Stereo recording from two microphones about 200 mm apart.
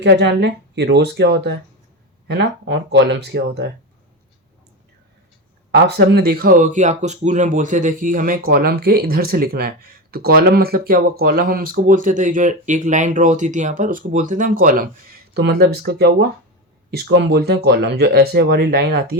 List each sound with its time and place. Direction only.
0.0 s speech: 60° right (ahead or behind)
5.7 s speech: 60° right (ahead or behind); by 14.8 s 45° right (ahead or behind)
15.4 s speech: 55° right (ahead or behind)